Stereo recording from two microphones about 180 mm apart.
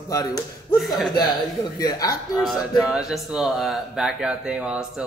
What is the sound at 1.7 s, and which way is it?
Speech, 20° left (ahead or behind).